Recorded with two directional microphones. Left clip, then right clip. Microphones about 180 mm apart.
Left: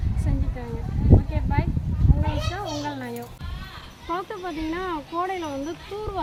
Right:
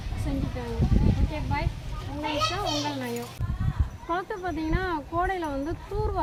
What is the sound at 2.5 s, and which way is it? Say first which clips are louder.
Children playing: right 1 dB; 5° right (ahead or behind).